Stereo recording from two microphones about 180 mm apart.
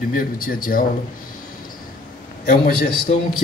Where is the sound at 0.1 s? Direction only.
50° left (ahead or behind).